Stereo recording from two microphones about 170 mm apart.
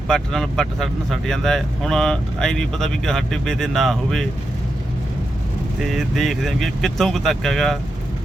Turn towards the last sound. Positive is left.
turn(degrees=0)  # may be behind; listen again after turning